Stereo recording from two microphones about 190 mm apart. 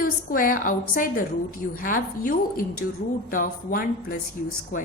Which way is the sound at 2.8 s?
60° left (ahead or behind).